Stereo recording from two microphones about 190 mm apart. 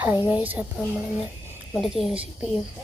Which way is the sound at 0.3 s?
10° right (ahead or behind).